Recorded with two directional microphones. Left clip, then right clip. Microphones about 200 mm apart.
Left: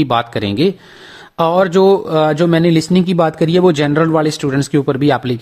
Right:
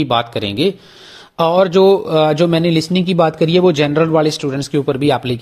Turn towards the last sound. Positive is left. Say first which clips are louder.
# left 1 dB
turn(degrees=20)  # may be behind; listen again after turning